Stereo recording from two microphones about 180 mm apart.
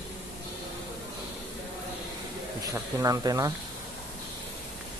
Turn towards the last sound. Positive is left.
turn(degrees=-20)  # may be behind; listen again after turning